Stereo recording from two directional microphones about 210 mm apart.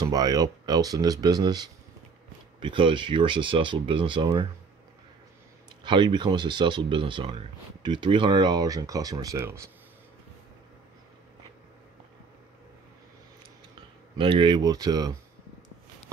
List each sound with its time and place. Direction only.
0.0 s speech: 20° right (ahead or behind)
5.9 s speech: 20° right (ahead or behind)
14.1 s speech: 25° right (ahead or behind)